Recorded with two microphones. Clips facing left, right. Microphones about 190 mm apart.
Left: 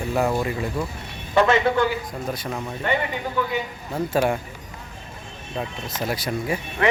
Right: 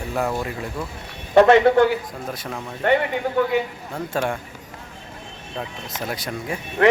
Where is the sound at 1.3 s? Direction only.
60° right (ahead or behind).